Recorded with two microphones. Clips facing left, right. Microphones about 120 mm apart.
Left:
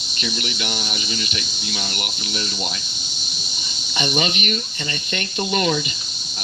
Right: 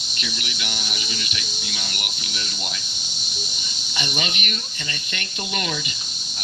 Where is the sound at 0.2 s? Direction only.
35° left (ahead or behind).